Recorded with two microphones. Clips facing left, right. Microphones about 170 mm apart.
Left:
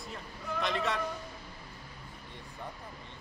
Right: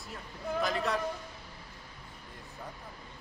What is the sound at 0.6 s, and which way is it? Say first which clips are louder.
Speech: even; centre (ahead or behind).